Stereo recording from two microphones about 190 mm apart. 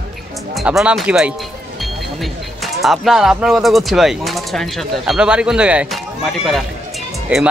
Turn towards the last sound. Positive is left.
turn(degrees=0)  # may be behind; listen again after turning